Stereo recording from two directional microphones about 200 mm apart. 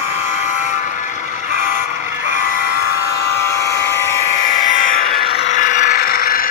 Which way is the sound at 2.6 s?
50° left (ahead or behind).